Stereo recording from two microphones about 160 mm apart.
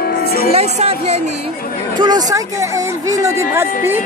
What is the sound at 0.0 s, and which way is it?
Music, 65° left (ahead or behind).